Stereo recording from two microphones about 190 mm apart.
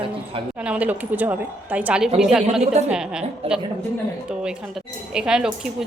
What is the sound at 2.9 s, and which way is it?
Speech, 5° right (ahead or behind).